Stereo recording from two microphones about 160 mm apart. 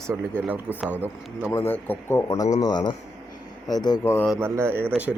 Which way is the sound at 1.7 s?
10° left (ahead or behind).